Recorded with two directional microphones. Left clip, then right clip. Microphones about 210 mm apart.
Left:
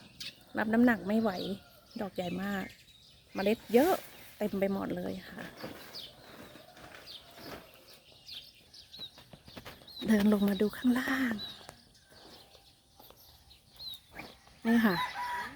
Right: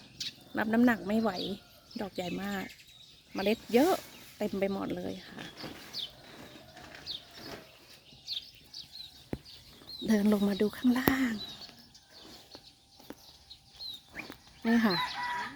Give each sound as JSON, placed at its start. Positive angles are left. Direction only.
{"t": 0.2, "sound": "bird", "side_deg": 40}
{"t": 0.5, "sound": "speech", "side_deg": 0}
{"t": 10.1, "sound": "speech", "side_deg": -5}
{"t": 14.6, "sound": "speech", "side_deg": -5}